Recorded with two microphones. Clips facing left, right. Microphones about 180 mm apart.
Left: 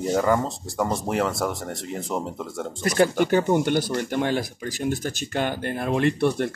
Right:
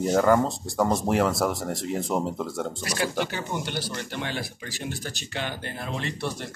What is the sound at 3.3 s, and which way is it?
Speech, 50° left (ahead or behind).